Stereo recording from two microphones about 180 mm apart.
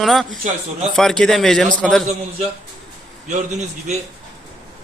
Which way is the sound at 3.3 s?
40° right (ahead or behind).